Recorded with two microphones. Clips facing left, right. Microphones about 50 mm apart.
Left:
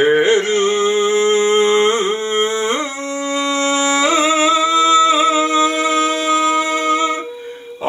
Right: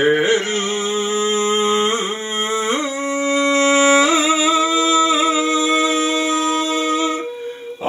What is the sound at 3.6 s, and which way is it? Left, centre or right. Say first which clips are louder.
Music: right 4 dB; right.